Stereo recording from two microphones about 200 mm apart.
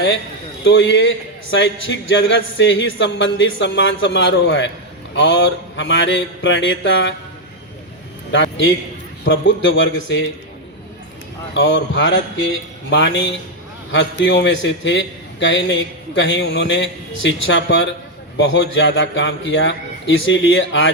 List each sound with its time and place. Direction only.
0.6 s a man's voice: 65° left (ahead or behind)
8.3 s a sound: 65° left (ahead or behind)
9.2 s a man's voice: 65° left (ahead or behind)
11.5 s a man's voice: 65° left (ahead or behind)